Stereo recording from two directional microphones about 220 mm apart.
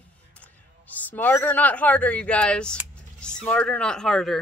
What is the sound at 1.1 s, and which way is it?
Speech, 10° left (ahead or behind).